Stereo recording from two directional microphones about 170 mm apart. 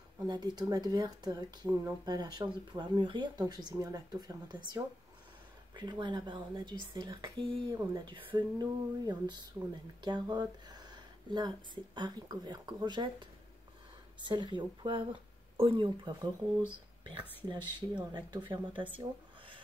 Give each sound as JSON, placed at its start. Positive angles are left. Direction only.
{"t": 0.3, "sound": "speech", "side_deg": -25}